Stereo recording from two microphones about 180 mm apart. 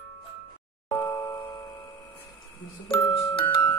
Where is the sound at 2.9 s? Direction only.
30° left (ahead or behind).